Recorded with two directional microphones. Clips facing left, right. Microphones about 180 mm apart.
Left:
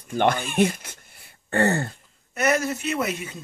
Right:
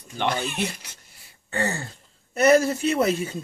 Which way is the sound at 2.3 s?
30° right (ahead or behind).